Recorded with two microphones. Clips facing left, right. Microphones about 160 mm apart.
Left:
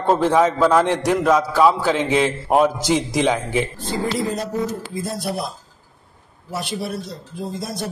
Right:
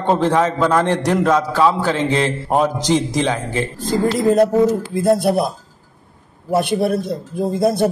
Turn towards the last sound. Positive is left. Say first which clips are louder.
# right 12 dB
turn(degrees=-55)  # may be behind; listen again after turning